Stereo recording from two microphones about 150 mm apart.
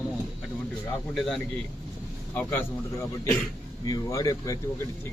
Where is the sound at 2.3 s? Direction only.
15° left (ahead or behind).